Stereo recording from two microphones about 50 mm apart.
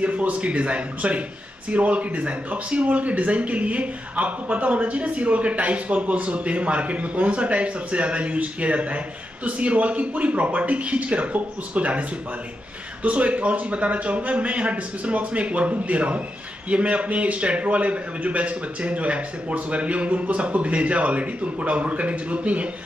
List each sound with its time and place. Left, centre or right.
0.0 s speech: right